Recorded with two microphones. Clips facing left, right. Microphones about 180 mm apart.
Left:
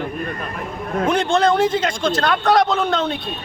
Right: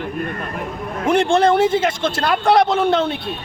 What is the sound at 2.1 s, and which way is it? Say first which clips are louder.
A man's voice: right 1 dB; 10° right (ahead or behind).